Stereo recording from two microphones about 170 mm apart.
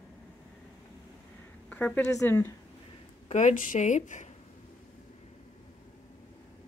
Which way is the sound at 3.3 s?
45° left (ahead or behind).